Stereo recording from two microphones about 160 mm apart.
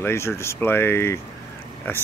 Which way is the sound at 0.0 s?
15° left (ahead or behind).